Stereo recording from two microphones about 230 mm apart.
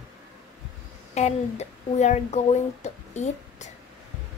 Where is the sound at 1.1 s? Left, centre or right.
Left.